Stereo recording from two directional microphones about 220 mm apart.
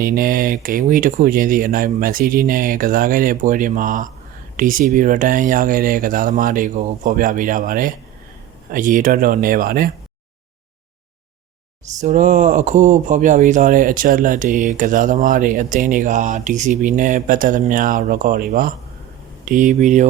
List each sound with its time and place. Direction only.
0.0 s speech: 40° right (ahead or behind)
11.9 s speech: 35° right (ahead or behind)